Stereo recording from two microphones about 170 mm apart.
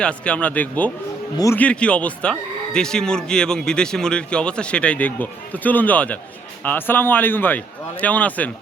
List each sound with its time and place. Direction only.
0.0 s speech: 5° left (ahead or behind)